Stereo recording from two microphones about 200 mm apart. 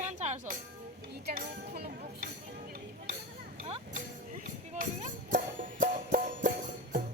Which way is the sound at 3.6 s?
30° right (ahead or behind).